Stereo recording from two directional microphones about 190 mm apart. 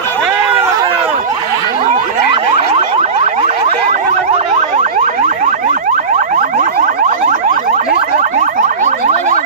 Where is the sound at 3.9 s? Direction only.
35° right (ahead or behind).